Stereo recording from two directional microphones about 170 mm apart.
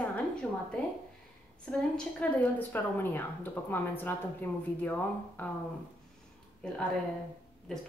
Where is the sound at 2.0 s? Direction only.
10° left (ahead or behind).